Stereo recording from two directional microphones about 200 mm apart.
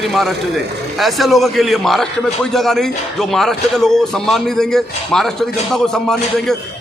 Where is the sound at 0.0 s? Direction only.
Centre (ahead or behind).